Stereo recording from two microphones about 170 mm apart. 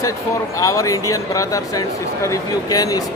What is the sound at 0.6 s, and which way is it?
Speech, 20° left (ahead or behind).